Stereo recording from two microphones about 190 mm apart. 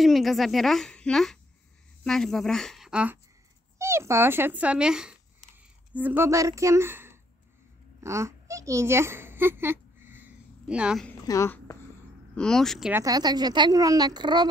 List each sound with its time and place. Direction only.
0.0 s a woman's voice: centre (ahead or behind)
8.0 s a sound: 15° right (ahead or behind)
11.2 s a woman's voice: 15° left (ahead or behind)
12.4 s a woman's voice: 5° left (ahead or behind)
12.9 s speech: 20° right (ahead or behind)